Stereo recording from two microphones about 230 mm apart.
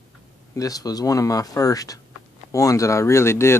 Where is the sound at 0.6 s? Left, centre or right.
Centre.